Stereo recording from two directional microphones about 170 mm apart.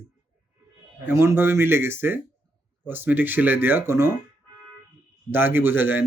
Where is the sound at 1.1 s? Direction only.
15° right (ahead or behind).